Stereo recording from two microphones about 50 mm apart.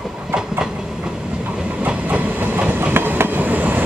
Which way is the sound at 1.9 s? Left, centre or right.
Right.